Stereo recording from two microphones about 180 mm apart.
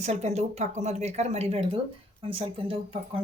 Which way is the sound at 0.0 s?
40° right (ahead or behind).